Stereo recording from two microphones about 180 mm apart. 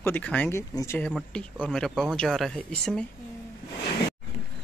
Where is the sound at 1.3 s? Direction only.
5° left (ahead or behind).